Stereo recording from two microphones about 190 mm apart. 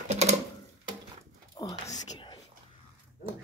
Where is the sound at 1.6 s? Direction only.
25° left (ahead or behind).